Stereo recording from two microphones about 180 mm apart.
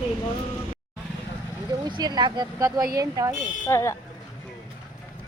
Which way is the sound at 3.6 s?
15° left (ahead or behind).